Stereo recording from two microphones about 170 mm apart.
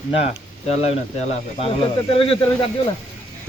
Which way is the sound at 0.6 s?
40° left (ahead or behind).